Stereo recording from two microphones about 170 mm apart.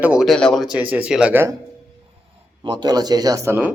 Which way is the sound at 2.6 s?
25° right (ahead or behind).